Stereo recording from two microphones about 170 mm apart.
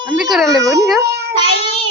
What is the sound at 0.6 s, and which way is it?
Speech, 20° right (ahead or behind).